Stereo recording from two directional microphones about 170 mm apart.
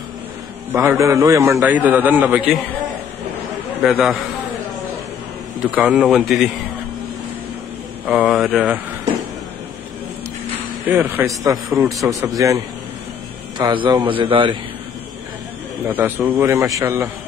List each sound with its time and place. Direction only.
0.7 s a man's voice: 15° right (ahead or behind)
3.8 s speech: centre (ahead or behind)
5.8 s speech: 5° right (ahead or behind)
8.1 s speech: centre (ahead or behind)
10.9 s a man's voice: 10° right (ahead or behind)
13.6 s a man's voice: 30° right (ahead or behind)
15.9 s a man's voice: 10° right (ahead or behind)